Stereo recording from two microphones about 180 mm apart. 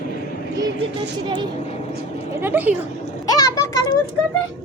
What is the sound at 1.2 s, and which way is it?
Speech, 25° right (ahead or behind).